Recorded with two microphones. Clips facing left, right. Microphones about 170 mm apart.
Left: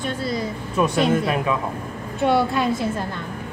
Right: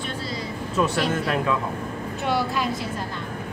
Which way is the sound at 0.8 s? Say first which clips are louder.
Left 2 dB; 15° left (ahead or behind).